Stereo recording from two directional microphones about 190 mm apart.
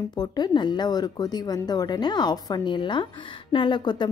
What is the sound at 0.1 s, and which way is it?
Speech, 20° left (ahead or behind).